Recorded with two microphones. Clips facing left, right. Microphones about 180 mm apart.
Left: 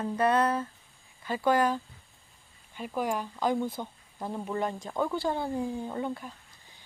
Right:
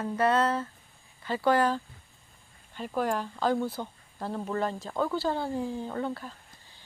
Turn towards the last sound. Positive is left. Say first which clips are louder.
# even
turn(degrees=15)  # may be behind; listen again after turning